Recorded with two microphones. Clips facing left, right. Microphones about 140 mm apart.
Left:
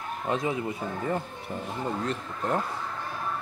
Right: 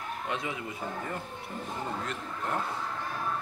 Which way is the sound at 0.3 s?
35° left (ahead or behind).